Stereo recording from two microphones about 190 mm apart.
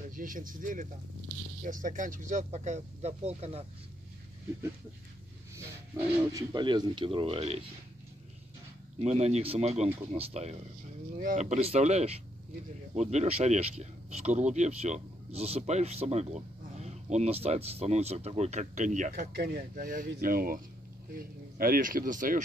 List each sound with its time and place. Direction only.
0.1 s speech: 45° right (ahead or behind)
5.9 s speech: 20° right (ahead or behind)
9.0 s speech: 35° right (ahead or behind)